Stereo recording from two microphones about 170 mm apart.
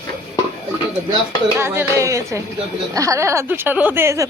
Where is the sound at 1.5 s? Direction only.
15° right (ahead or behind).